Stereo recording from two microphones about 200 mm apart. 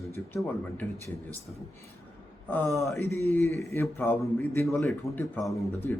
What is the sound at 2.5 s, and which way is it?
Speech, 10° left (ahead or behind).